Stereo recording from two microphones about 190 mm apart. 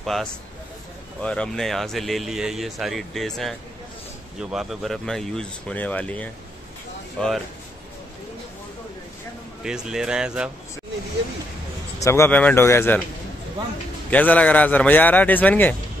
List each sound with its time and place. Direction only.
0.0 s speech: centre (ahead or behind)
9.6 s speech: 5° right (ahead or behind)
12.0 s a man's voice: 15° left (ahead or behind)
14.1 s a man's voice: 10° left (ahead or behind)